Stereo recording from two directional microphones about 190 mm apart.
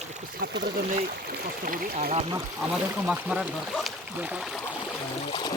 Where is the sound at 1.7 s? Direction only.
50° right (ahead or behind).